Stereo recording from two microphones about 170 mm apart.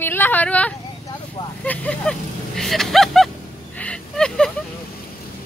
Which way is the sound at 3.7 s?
5° left (ahead or behind).